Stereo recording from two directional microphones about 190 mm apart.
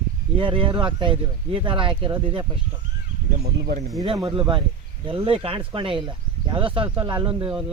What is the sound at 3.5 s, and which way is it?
Speech, 60° right (ahead or behind).